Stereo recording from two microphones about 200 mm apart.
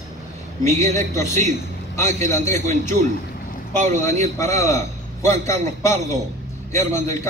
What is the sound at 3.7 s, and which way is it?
Speech, 35° right (ahead or behind).